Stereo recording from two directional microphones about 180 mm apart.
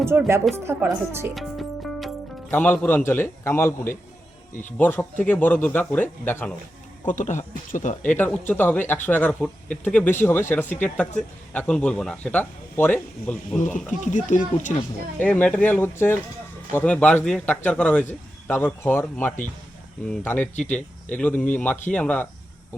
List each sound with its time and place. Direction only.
0.0 s speech: 15° right (ahead or behind)
1.4 s music: centre (ahead or behind)
2.5 s speech: 10° left (ahead or behind)
7.1 s speech: 45° left (ahead or behind)
8.0 s speech: 10° left (ahead or behind)
14.0 s speech: 45° left (ahead or behind)
15.2 s speech: 5° left (ahead or behind)